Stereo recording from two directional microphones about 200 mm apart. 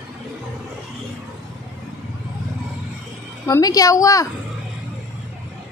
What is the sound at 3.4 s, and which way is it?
Speech, 15° left (ahead or behind).